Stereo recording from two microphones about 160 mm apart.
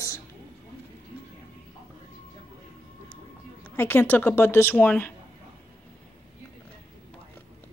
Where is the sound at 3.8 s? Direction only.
15° left (ahead or behind).